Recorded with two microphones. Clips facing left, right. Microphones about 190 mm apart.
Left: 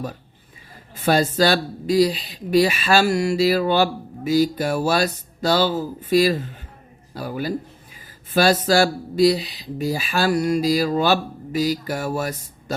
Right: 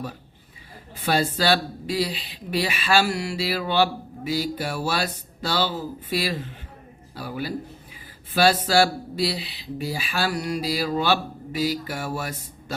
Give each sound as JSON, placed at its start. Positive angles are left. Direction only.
{"t": 0.9, "sound": "a woman's voice", "side_deg": 45}